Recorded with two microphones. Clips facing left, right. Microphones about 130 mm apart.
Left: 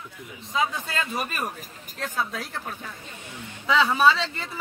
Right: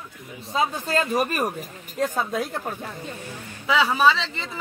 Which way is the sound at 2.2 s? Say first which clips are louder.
Even; 50° right (ahead or behind).